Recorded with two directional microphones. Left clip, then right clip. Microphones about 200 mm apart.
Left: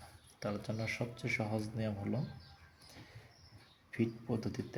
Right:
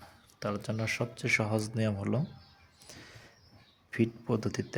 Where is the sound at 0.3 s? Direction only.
35° right (ahead or behind).